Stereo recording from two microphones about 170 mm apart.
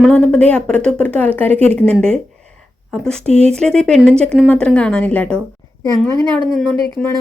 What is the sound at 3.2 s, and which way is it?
Speech, 40° right (ahead or behind).